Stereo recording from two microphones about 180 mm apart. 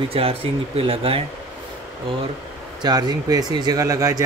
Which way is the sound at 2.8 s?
20° right (ahead or behind).